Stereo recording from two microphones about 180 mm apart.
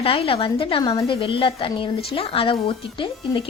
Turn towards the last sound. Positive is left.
turn(degrees=30)  # may be behind; listen again after turning